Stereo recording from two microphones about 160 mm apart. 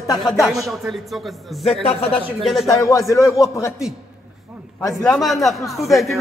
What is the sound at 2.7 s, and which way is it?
A man's voice, 20° left (ahead or behind).